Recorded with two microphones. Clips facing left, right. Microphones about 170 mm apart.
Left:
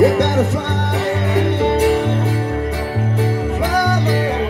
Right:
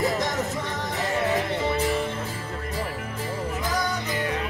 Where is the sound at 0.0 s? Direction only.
65° left (ahead or behind).